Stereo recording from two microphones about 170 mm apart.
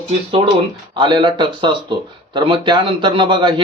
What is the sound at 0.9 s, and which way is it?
Speech, 30° right (ahead or behind).